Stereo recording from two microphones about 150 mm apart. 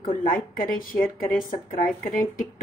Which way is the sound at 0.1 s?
70° left (ahead or behind).